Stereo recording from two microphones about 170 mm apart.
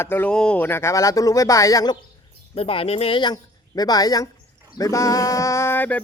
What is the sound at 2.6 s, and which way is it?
Speech, 35° left (ahead or behind).